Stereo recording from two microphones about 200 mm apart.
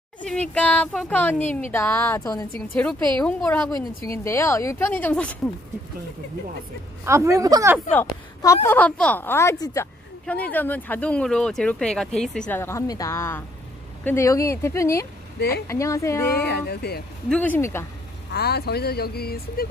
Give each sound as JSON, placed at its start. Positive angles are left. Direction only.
{"t": 0.2, "sound": "a woman's voice", "side_deg": 5}
{"t": 7.1, "sound": "a woman's voice", "side_deg": -15}
{"t": 7.9, "sound": "a woman's voice", "side_deg": 10}
{"t": 15.3, "sound": "speech", "side_deg": 50}
{"t": 15.6, "sound": "a woman's voice", "side_deg": 15}
{"t": 16.3, "sound": "speech", "side_deg": 50}
{"t": 17.3, "sound": "a woman's voice", "side_deg": 10}
{"t": 18.3, "sound": "speech", "side_deg": 55}